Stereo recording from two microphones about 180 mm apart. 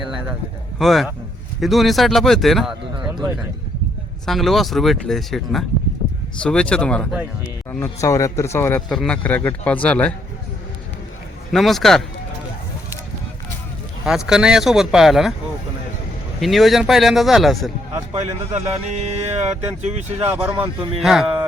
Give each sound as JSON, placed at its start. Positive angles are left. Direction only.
{"t": 0.8, "sound": "speech", "side_deg": 0}
{"t": 2.9, "sound": "speech", "side_deg": -25}
{"t": 4.3, "sound": "a man's voice", "side_deg": 0}
{"t": 11.5, "sound": "speech", "side_deg": 0}
{"t": 14.0, "sound": "speech", "side_deg": -5}
{"t": 16.4, "sound": "speech", "side_deg": 0}
{"t": 18.2, "sound": "speech", "side_deg": -35}
{"t": 20.3, "sound": "speech", "side_deg": -10}